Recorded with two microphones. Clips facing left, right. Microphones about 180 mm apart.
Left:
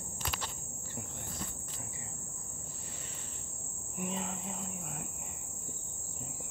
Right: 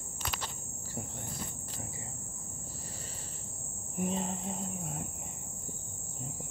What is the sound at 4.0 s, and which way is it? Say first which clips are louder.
Cricket: right 4 dB; 35° right (ahead or behind).